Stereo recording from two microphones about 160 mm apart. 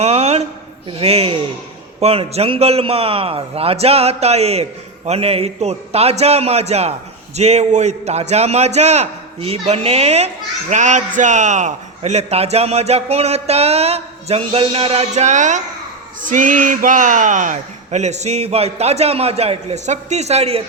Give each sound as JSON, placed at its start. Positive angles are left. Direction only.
{"t": 0.0, "sound": "a woman's voice", "side_deg": -40}